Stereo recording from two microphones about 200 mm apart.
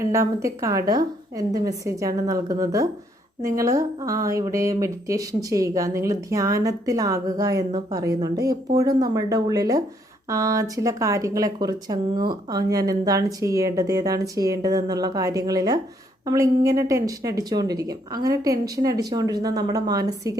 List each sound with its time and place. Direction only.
0.0 s a woman's voice: 15° right (ahead or behind)